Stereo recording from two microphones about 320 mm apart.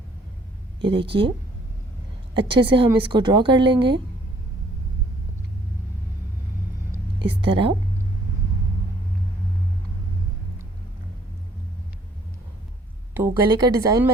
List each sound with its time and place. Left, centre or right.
0.8 s speech: centre
2.3 s speech: centre
7.2 s speech: centre
13.2 s speech: centre